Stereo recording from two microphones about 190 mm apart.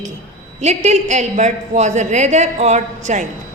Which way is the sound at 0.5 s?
35° right (ahead or behind).